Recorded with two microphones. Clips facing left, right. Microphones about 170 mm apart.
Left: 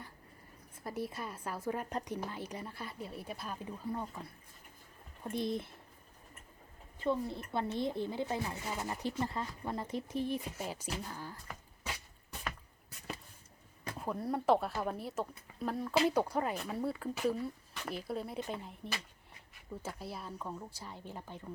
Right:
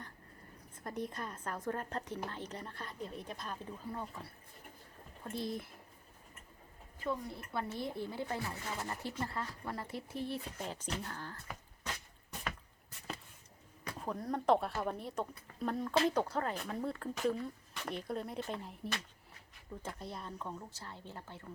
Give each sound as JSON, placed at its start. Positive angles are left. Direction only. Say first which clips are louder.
{"t": 0.8, "sound": "speech", "louder": "left 1 dB", "side_deg": 5}
{"t": 5.2, "sound": "speech", "louder": "left 4 dB", "side_deg": 20}
{"t": 7.0, "sound": "speech", "louder": "left 5 dB", "side_deg": 25}
{"t": 11.8, "sound": "drip", "louder": "left 2 dB", "side_deg": 5}
{"t": 14.0, "sound": "a woman's voice", "louder": "left 2 dB", "side_deg": 5}